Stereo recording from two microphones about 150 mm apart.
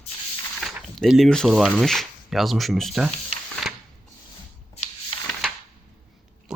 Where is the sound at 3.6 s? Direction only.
Centre (ahead or behind).